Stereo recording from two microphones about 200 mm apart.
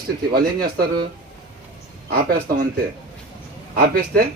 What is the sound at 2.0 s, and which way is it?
Speech, 45° right (ahead or behind).